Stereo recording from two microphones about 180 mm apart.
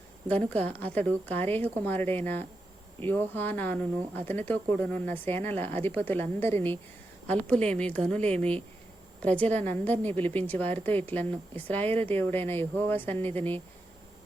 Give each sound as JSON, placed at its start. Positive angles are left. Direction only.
{"t": 0.3, "sound": "speech", "side_deg": 10}